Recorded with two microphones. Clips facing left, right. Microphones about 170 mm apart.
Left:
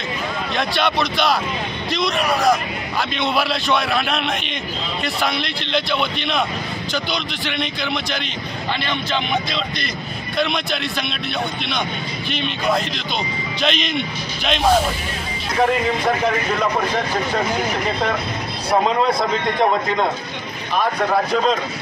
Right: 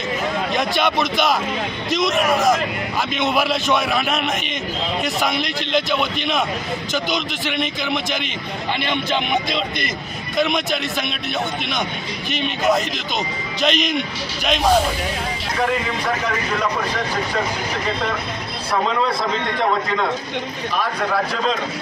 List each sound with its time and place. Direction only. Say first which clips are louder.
0.6 s speech: left 1 dB; 10° right (ahead or behind)
1.9 s a man's voice: right 2 dB; 45° right (ahead or behind)
3.3 s a man's voice: right 1 dB; 15° right (ahead or behind)
5.3 s a man's voice: right 2 dB; 45° right (ahead or behind)
7.8 s speech: right 1 dB; 10° right (ahead or behind)
10.5 s a man's voice: right 2 dB; 45° right (ahead or behind)
13.6 s a man's voice: right 2 dB; 5° right (ahead or behind)